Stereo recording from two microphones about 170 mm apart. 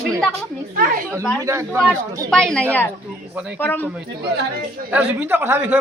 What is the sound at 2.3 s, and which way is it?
Speech, 5° left (ahead or behind).